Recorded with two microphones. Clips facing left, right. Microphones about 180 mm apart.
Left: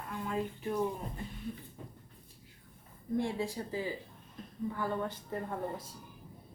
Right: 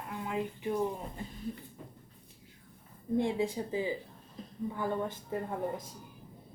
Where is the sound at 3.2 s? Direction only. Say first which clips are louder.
Right 3 dB; 20° right (ahead or behind).